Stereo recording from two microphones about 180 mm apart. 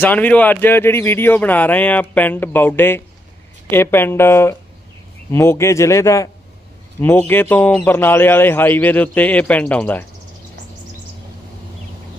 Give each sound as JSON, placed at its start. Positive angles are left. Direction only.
{"t": 0.0, "sound": "speech", "side_deg": 10}